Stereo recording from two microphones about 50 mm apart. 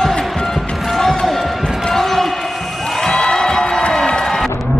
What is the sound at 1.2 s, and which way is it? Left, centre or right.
Basketball bounce, centre.